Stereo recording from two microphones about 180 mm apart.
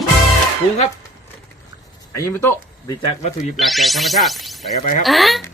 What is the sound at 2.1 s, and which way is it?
Speech, 15° left (ahead or behind).